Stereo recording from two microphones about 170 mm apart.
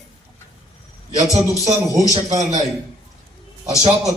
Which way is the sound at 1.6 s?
20° right (ahead or behind).